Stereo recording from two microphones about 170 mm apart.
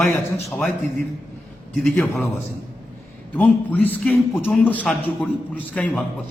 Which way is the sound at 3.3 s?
10° left (ahead or behind).